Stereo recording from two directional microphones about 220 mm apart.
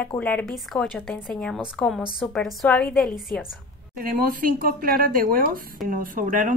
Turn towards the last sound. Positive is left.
turn(degrees=-35)  # may be behind; listen again after turning